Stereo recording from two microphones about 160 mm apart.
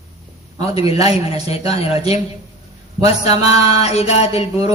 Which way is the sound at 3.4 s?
40° left (ahead or behind).